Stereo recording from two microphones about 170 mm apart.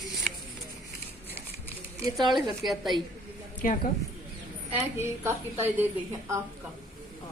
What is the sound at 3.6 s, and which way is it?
Speech, 55° left (ahead or behind).